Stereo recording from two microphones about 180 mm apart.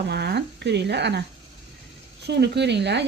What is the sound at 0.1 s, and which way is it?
Speech, 65° right (ahead or behind).